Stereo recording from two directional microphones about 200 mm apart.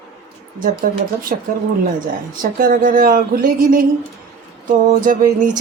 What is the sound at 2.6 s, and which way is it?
Speech, 45° right (ahead or behind).